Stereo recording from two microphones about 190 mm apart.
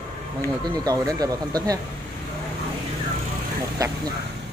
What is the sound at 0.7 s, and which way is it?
Speech, 20° right (ahead or behind).